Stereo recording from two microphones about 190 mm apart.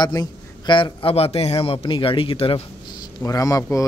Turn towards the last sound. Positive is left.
turn(degrees=20)  # may be behind; listen again after turning